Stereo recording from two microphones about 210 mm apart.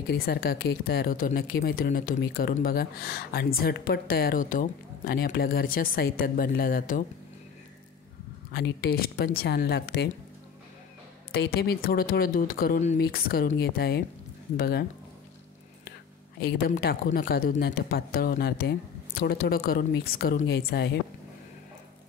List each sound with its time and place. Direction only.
0.1 s speech: 50° left (ahead or behind)
8.5 s speech: 50° left (ahead or behind)
11.3 s speech: 50° left (ahead or behind)
16.3 s speech: 50° left (ahead or behind)